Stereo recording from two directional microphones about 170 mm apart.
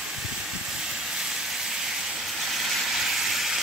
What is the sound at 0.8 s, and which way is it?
Vehicle, centre (ahead or behind).